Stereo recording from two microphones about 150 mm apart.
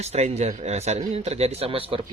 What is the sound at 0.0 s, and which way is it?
Speech, 45° right (ahead or behind).